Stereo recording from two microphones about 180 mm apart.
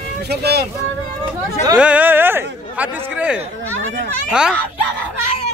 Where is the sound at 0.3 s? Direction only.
65° right (ahead or behind).